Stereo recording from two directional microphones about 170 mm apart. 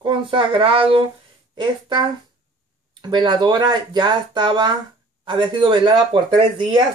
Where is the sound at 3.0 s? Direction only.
25° right (ahead or behind).